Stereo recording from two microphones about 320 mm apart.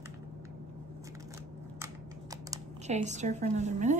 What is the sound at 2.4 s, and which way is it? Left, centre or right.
Speech, right.